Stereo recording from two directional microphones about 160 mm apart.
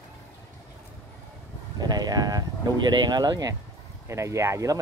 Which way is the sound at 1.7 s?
25° right (ahead or behind).